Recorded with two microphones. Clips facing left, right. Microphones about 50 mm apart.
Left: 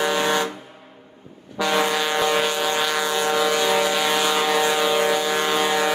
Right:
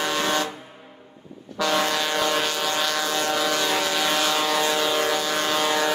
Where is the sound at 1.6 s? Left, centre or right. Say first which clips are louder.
Left 2 dB; centre.